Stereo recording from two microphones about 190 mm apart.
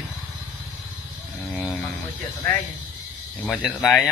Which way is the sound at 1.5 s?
Centre (ahead or behind).